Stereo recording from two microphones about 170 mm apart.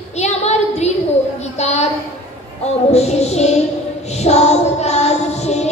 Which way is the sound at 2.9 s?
40° left (ahead or behind).